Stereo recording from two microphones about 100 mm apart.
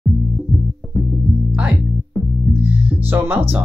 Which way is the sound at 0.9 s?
Centre (ahead or behind).